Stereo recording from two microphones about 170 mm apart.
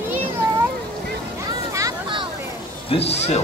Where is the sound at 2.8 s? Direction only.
35° left (ahead or behind).